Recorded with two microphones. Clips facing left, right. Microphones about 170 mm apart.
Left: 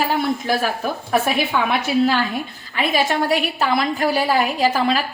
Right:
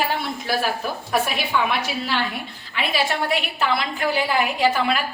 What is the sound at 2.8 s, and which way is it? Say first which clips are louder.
A woman's voice: left 4 dB; 45° left (ahead or behind).